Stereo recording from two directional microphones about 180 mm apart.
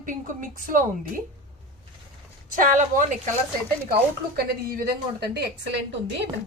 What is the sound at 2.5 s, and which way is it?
Speech, 50° right (ahead or behind).